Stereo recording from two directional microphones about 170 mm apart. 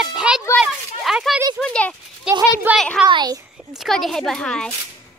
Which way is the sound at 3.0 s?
25° right (ahead or behind).